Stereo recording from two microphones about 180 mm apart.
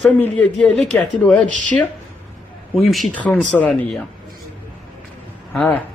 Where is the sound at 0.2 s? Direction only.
5° left (ahead or behind).